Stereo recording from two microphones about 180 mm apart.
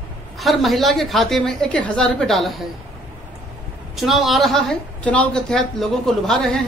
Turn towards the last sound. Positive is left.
turn(degrees=5)  # may be behind; listen again after turning